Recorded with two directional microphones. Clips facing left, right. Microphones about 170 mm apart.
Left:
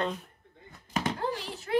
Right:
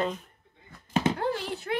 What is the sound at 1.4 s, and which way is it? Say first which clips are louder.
Speech: right 5 dB; 65° right (ahead or behind).